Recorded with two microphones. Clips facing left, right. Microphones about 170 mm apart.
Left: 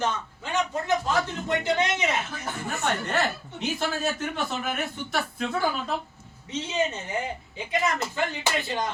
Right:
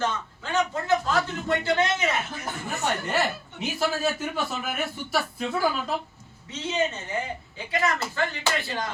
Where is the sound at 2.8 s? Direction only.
5° right (ahead or behind).